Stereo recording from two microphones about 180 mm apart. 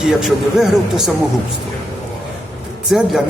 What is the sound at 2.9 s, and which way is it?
Speech, centre (ahead or behind).